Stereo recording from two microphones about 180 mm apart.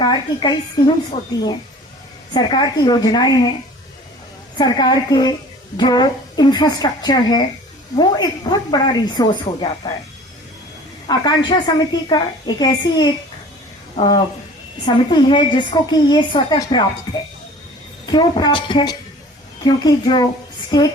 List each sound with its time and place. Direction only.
0.0 s a woman's voice: 20° left (ahead or behind)
2.3 s a woman's voice: 20° left (ahead or behind)
4.5 s a woman's voice: 20° left (ahead or behind)
11.0 s a woman's voice: 25° left (ahead or behind)
18.0 s a woman's voice: 25° left (ahead or behind)